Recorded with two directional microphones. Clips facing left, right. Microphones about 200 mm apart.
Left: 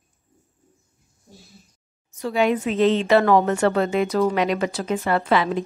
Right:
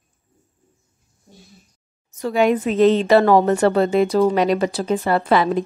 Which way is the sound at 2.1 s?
45° right (ahead or behind).